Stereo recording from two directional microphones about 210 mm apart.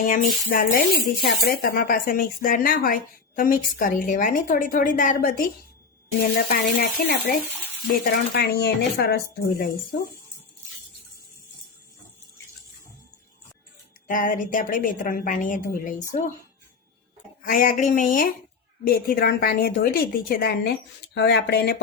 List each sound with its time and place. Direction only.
0.1 s a woman's voice: 45° left (ahead or behind)
14.1 s speech: 40° left (ahead or behind)
17.4 s a woman's voice: 40° left (ahead or behind)